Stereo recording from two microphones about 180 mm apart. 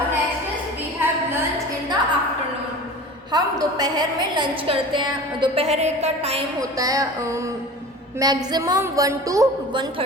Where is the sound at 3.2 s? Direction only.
20° right (ahead or behind).